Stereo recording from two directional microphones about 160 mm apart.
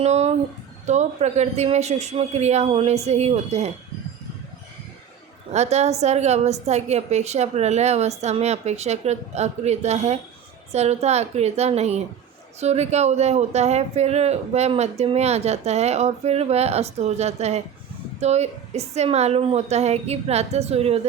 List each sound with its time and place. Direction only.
0.0 s speech: 40° right (ahead or behind)
5.5 s a woman's voice: 45° right (ahead or behind)